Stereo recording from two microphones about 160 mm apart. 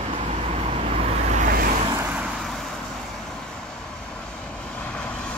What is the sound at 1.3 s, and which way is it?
Vehicle, 55° right (ahead or behind).